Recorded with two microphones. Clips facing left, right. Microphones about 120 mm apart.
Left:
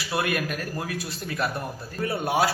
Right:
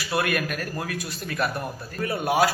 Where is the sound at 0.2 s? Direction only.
20° left (ahead or behind).